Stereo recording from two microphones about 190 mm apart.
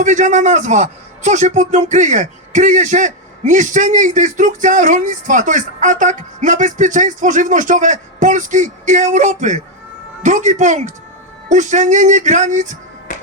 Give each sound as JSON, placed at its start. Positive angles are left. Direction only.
{"t": 0.0, "sound": "a man's voice", "side_deg": -40}